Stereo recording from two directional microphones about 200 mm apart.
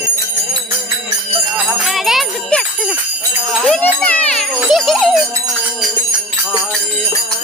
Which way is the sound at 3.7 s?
10° left (ahead or behind).